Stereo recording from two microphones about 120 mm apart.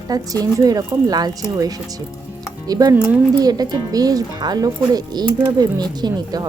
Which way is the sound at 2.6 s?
30° right (ahead or behind).